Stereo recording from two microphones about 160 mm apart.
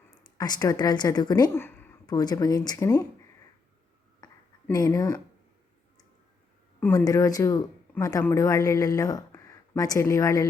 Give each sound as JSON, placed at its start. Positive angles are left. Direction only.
{"t": 0.2, "sound": "a woman's voice", "side_deg": 25}
{"t": 1.5, "sound": "a sound", "side_deg": 15}
{"t": 2.0, "sound": "speech", "side_deg": 25}
{"t": 4.7, "sound": "speech", "side_deg": 25}
{"t": 6.9, "sound": "speech", "side_deg": 20}